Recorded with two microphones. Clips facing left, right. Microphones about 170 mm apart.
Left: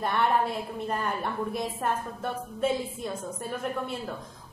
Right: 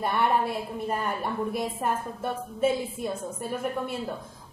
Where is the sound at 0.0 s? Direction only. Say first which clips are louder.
Right 1 dB; 10° right (ahead or behind).